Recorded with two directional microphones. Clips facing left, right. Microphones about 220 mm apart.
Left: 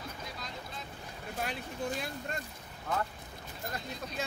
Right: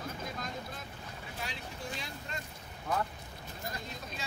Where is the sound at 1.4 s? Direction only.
55° left (ahead or behind).